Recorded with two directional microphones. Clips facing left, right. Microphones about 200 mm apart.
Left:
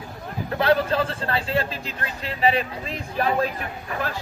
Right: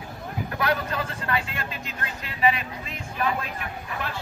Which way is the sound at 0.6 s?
30° left (ahead or behind).